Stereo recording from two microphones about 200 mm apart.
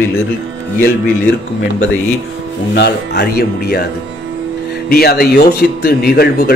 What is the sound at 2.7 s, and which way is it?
Speech, 55° left (ahead or behind).